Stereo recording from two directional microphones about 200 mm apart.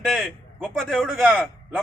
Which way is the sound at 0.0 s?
Centre (ahead or behind).